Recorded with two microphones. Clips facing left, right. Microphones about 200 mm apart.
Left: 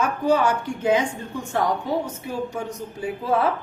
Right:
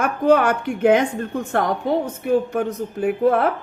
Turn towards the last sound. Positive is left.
turn(degrees=-60)  # may be behind; listen again after turning